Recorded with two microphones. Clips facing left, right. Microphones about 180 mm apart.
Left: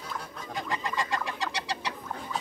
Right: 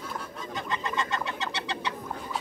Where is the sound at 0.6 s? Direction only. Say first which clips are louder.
Right 1 dB; 25° right (ahead or behind).